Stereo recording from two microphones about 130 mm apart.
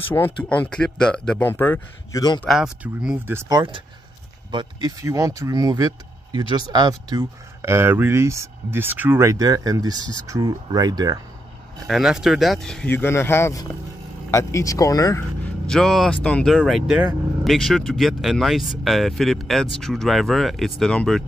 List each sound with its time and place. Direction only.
0.1 s speech: 15° left (ahead or behind)
1.5 s speech: 15° left (ahead or behind)
2.4 s speech: 5° right (ahead or behind)
3.4 s speech: 35° right (ahead or behind)
11.9 s speech: 5° right (ahead or behind)
12.9 s speech: 20° left (ahead or behind)
15.7 s speech: centre (ahead or behind)
16.5 s speech: centre (ahead or behind)